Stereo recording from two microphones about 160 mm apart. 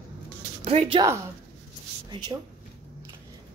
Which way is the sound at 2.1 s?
30° right (ahead or behind).